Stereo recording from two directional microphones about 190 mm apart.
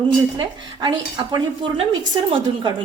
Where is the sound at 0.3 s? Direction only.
20° right (ahead or behind).